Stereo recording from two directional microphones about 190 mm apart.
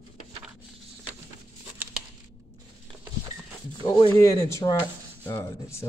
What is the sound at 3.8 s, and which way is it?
Speech, 25° left (ahead or behind).